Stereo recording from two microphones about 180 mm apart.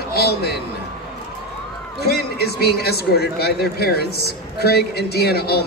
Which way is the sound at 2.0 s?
60° left (ahead or behind).